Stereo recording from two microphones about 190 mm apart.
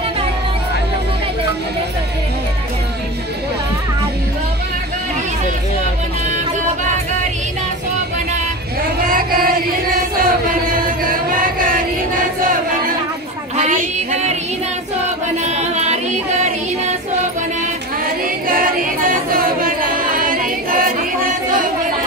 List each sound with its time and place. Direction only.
9.0 s chant: 50° right (ahead or behind)
13.6 s music: 40° right (ahead or behind)
15.4 s a sound: 35° right (ahead or behind)
18.0 s music: 45° right (ahead or behind)